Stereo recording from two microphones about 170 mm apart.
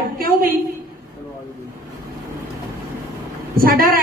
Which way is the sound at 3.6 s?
55° right (ahead or behind).